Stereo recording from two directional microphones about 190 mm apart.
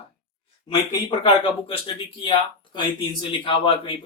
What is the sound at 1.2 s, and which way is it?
Speech, 30° left (ahead or behind).